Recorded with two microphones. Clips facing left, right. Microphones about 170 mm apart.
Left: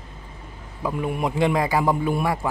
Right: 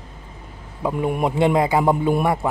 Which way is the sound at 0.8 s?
25° right (ahead or behind).